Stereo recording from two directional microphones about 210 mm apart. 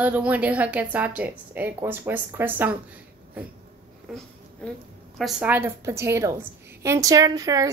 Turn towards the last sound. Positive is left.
turn(degrees=-15)  # may be behind; listen again after turning